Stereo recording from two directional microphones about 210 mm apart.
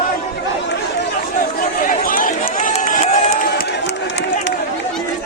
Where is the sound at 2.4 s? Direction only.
35° left (ahead or behind); by 4.5 s 55° left (ahead or behind).